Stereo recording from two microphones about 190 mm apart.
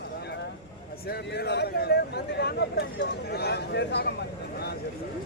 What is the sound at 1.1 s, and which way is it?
Speech, 60° left (ahead or behind).